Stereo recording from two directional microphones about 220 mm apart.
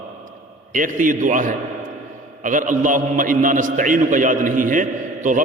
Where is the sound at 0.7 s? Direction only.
35° right (ahead or behind).